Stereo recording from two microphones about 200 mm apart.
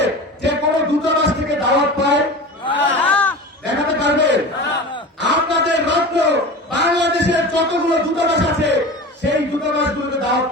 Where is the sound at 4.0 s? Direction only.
60° right (ahead or behind).